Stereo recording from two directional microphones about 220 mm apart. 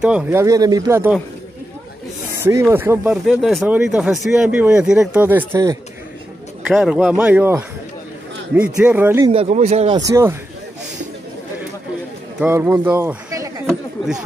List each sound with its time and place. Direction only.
0.0 s speech: 5° right (ahead or behind)
2.3 s speech: 10° right (ahead or behind)
6.7 s speech: centre (ahead or behind)
9.3 s speech: 25° right (ahead or behind)
9.9 s speech: 15° right (ahead or behind)
12.4 s speech: 10° right (ahead or behind)
13.7 s chatter: centre (ahead or behind)